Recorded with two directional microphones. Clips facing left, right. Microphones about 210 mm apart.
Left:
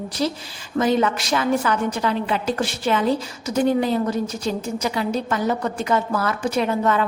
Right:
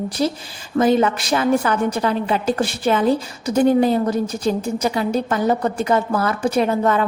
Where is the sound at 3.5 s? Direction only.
50° right (ahead or behind).